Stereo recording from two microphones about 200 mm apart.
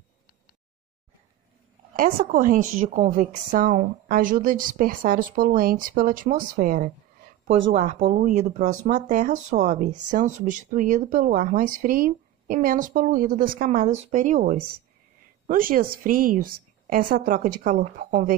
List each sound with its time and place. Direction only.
2.0 s a woman's voice: 45° right (ahead or behind)